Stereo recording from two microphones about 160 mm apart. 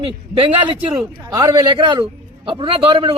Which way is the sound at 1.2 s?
20° right (ahead or behind).